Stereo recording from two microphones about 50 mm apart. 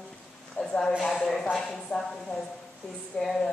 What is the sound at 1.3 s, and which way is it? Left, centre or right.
Speech, centre.